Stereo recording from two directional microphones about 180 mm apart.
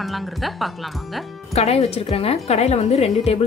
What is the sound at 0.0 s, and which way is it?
Speech, centre (ahead or behind).